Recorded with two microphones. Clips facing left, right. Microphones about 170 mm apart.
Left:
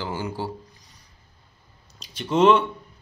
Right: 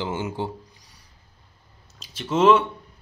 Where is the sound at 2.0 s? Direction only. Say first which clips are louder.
Left 1 dB; 5° right (ahead or behind).